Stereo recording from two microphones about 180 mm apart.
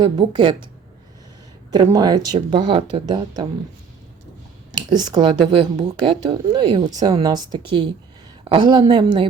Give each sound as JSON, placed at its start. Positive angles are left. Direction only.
{"t": 0.0, "sound": "a woman's voice", "side_deg": -25}
{"t": 1.7, "sound": "a woman's voice", "side_deg": -20}
{"t": 4.9, "sound": "a woman's voice", "side_deg": -25}